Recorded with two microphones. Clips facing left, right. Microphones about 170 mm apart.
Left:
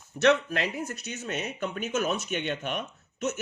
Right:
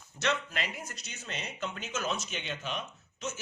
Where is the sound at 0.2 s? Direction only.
65° left (ahead or behind).